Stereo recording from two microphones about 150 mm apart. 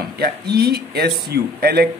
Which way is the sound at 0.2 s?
90° right.